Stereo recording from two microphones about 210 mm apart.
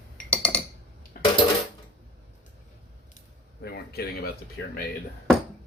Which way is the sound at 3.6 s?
50° left (ahead or behind).